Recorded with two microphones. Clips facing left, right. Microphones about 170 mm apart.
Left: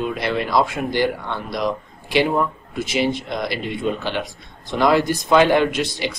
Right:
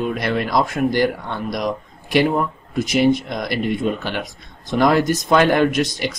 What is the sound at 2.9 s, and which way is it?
Speech, 45° right (ahead or behind).